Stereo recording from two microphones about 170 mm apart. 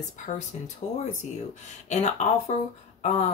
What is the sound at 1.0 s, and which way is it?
Speech, 45° left (ahead or behind).